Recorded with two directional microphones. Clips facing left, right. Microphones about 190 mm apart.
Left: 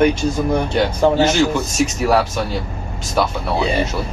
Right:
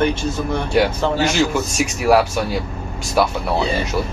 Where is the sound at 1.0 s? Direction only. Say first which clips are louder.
Left 5 dB; 15° left (ahead or behind).